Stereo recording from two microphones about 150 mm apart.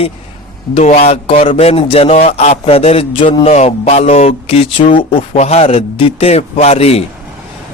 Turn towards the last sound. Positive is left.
turn(degrees=45)  # may be behind; listen again after turning